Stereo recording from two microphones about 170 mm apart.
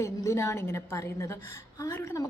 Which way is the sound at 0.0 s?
15° left (ahead or behind).